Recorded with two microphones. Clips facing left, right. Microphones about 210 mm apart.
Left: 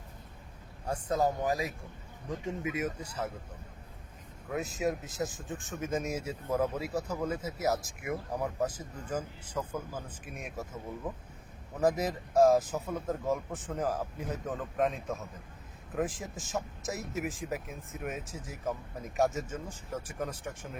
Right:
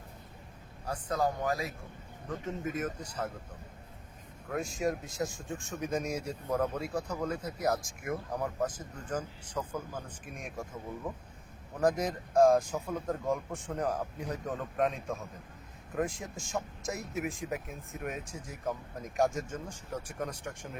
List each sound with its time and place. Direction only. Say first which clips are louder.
0.9 s speech: left 2 dB; 25° left (ahead or behind); by 3.3 s 10° left (ahead or behind)
4.4 s speech: even; 5° left (ahead or behind)